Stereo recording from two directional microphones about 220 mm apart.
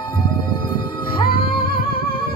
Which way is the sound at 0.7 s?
20° left (ahead or behind).